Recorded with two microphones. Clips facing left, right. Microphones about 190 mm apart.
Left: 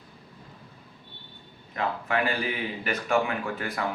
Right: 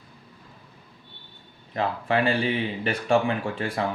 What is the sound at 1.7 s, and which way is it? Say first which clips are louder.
Speech: right 3 dB; 30° right (ahead or behind).